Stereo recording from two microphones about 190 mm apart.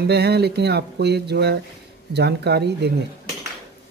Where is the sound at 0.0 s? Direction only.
55° right (ahead or behind).